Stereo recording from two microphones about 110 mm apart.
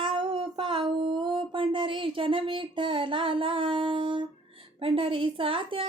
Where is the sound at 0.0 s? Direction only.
50° right (ahead or behind).